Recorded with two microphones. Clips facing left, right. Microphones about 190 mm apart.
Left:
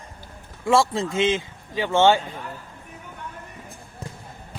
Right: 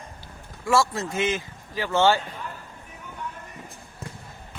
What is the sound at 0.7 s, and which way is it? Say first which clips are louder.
Speech: left 3 dB; 25° left (ahead or behind).